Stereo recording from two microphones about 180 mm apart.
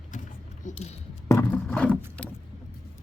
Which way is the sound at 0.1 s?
45° left (ahead or behind).